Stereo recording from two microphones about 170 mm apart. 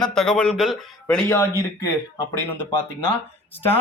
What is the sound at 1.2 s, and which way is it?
Speech, 15° left (ahead or behind).